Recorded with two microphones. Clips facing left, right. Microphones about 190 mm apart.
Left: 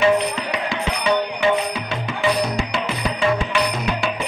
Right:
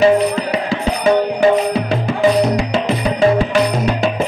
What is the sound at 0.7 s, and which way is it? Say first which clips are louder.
Music: right 6 dB; 40° right (ahead or behind).